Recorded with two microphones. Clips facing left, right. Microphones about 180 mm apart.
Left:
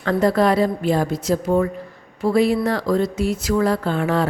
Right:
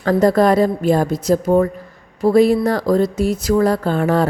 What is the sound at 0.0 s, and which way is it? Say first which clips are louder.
A woman's voice: right 4 dB; 40° right (ahead or behind).